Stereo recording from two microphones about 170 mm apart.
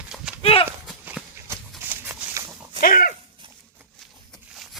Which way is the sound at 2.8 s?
60° left (ahead or behind).